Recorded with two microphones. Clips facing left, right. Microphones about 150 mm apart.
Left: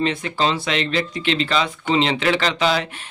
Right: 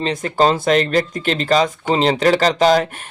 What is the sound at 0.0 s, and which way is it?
Speech, 40° right (ahead or behind).